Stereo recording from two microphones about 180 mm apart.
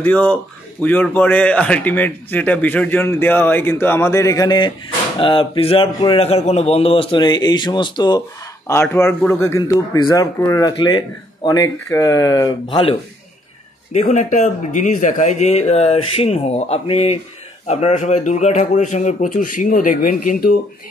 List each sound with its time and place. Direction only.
0.0 s a man's voice: 10° left (ahead or behind); by 8.2 s 25° left (ahead or behind)
8.6 s a man's voice: 15° left (ahead or behind)
13.9 s a man's voice: 40° left (ahead or behind)